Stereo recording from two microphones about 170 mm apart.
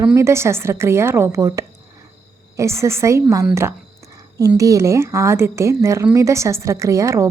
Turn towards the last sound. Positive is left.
turn(degrees=-20)  # may be behind; listen again after turning